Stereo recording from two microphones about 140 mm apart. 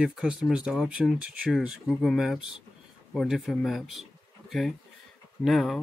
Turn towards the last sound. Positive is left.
turn(degrees=0)  # may be behind; listen again after turning